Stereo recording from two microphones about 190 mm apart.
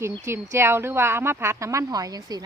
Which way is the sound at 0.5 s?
10° right (ahead or behind).